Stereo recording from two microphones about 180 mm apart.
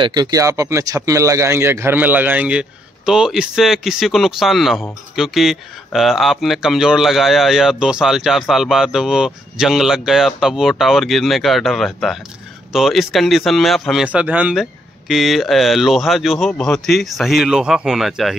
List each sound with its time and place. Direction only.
0.0 s speech: 25° right (ahead or behind); by 18.3 s centre (ahead or behind)